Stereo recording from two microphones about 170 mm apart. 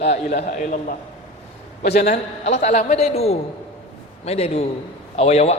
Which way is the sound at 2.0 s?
40° left (ahead or behind).